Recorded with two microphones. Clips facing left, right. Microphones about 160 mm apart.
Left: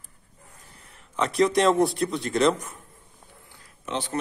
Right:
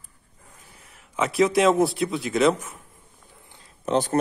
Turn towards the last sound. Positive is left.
turn(degrees=-45)  # may be behind; listen again after turning